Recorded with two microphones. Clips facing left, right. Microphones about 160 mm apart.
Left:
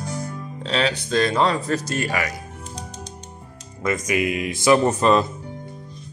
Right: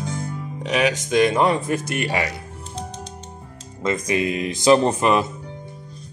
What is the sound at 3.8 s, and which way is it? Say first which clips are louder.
Speech: right 1 dB; 30° right (ahead or behind).